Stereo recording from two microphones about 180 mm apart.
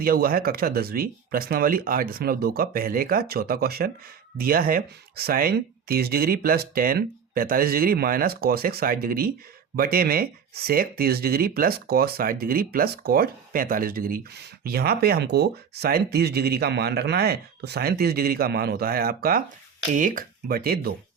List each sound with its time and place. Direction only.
0.0 s speech: 55° right (ahead or behind)